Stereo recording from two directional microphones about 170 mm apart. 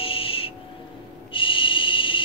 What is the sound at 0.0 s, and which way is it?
Owl, 30° left (ahead or behind).